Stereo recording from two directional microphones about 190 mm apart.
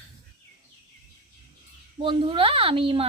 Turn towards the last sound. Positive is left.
turn(degrees=-30)  # may be behind; listen again after turning